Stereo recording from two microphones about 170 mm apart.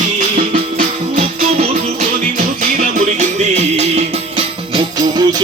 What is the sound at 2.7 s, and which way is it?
Music, 40° right (ahead or behind).